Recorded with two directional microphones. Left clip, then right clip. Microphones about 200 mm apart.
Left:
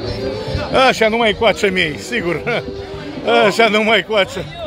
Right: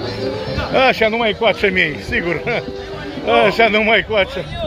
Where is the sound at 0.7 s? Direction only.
20° left (ahead or behind).